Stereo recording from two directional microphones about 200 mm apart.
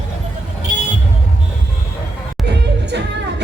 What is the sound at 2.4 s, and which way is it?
Music, 60° right (ahead or behind).